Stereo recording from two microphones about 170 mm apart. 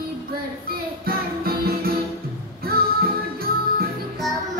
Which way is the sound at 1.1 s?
60° right (ahead or behind).